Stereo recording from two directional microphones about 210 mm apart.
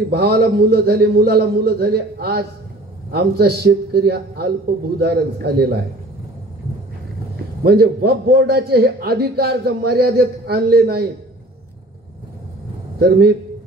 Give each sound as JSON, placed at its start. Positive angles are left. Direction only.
{"t": 0.1, "sound": "a man's voice", "side_deg": -50}
{"t": 7.6, "sound": "a man's voice", "side_deg": -50}
{"t": 13.0, "sound": "a man's voice", "side_deg": -50}